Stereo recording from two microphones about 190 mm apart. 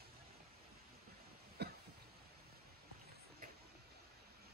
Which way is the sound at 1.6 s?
60° right (ahead or behind).